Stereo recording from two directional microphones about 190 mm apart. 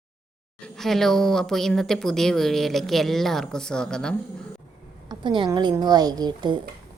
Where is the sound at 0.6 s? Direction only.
Centre (ahead or behind).